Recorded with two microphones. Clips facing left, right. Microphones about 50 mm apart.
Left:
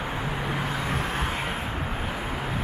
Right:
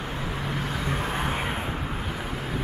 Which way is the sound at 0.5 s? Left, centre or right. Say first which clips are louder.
Even; centre.